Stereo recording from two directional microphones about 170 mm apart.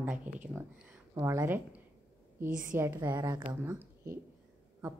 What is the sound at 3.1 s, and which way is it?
Speech, 25° right (ahead or behind).